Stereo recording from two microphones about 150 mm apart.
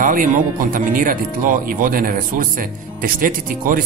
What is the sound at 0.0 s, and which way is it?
Speech, 65° right (ahead or behind).